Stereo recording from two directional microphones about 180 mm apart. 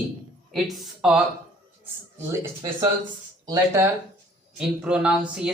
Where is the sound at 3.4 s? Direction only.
15° right (ahead or behind).